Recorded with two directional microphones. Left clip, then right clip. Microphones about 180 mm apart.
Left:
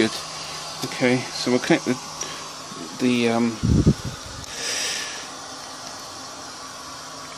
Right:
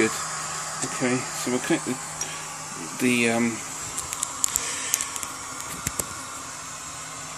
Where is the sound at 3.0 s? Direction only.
10° left (ahead or behind).